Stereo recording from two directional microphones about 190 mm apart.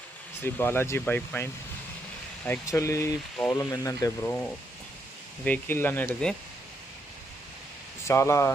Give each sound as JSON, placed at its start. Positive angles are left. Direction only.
{"t": 0.4, "sound": "speech", "side_deg": 10}
{"t": 8.0, "sound": "speech", "side_deg": 15}